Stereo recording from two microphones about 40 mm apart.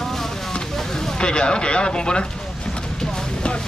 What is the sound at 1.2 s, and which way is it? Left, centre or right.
Speech, left.